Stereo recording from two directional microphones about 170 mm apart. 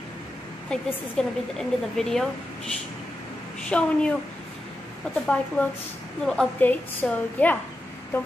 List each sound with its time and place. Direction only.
0.7 s a woman's voice: centre (ahead or behind)
3.6 s a woman's voice: 5° left (ahead or behind)
5.2 s a woman's voice: 5° left (ahead or behind)